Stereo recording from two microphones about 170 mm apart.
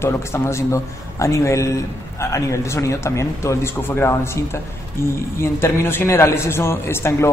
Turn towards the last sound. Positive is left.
turn(degrees=15)  # may be behind; listen again after turning